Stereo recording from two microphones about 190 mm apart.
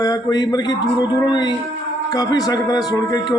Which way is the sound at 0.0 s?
20° left (ahead or behind).